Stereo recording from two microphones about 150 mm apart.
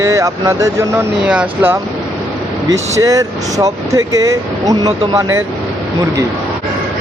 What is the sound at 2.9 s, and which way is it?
Speech, 20° right (ahead or behind).